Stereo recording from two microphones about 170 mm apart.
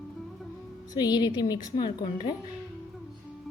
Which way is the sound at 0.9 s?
25° left (ahead or behind).